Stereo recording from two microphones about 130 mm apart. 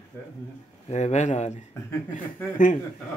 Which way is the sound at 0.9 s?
60° left (ahead or behind).